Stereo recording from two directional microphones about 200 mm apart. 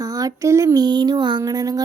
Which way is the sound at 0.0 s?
15° right (ahead or behind).